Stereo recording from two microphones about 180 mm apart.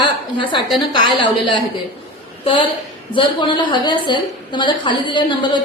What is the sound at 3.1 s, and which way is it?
A woman's voice, 25° left (ahead or behind).